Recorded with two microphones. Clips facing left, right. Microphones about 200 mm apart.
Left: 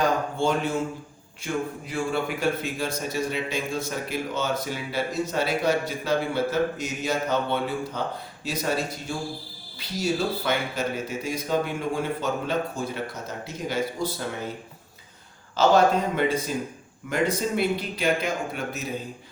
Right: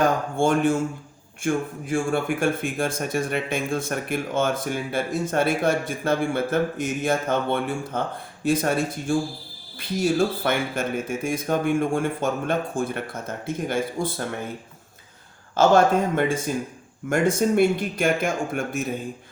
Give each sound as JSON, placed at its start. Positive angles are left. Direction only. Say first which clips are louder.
{"t": 0.0, "sound": "speech", "louder": "right 3 dB", "side_deg": -50}
{"t": 15.5, "sound": "speech", "louder": "right 2 dB", "side_deg": -50}